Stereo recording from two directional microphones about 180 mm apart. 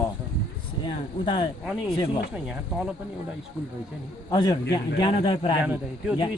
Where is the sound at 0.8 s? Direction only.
25° left (ahead or behind).